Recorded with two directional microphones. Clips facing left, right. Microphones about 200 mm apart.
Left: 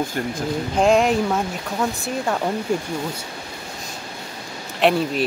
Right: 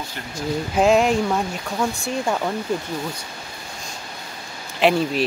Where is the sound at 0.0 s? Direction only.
50° left (ahead or behind).